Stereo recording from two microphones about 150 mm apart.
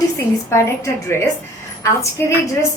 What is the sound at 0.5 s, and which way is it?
A woman's voice, 20° left (ahead or behind).